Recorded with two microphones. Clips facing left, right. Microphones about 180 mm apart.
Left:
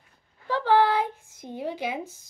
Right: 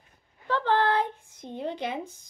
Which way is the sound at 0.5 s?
10° left (ahead or behind).